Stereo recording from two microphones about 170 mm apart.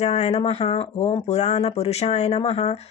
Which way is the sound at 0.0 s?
40° left (ahead or behind).